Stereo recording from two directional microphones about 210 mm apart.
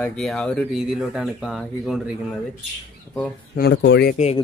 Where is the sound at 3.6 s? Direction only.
60° left (ahead or behind).